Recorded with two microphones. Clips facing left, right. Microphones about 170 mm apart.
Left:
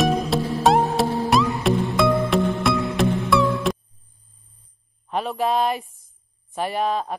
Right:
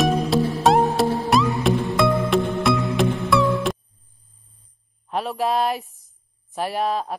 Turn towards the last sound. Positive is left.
turn(degrees=0)  # may be behind; listen again after turning